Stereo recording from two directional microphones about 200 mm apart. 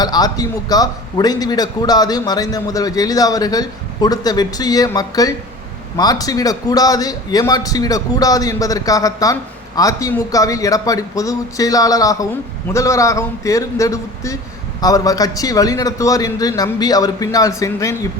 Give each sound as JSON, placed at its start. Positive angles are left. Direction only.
{"t": 0.0, "sound": "a man's voice", "side_deg": 20}